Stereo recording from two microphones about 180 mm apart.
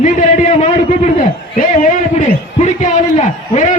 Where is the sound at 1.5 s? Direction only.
45° left (ahead or behind).